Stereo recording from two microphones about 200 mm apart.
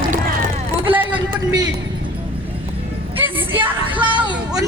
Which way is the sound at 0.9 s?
10° right (ahead or behind).